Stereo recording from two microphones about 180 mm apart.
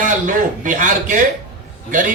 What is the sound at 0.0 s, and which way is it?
A man's voice, 45° right (ahead or behind).